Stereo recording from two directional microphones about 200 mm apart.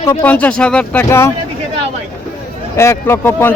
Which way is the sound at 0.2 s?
10° left (ahead or behind).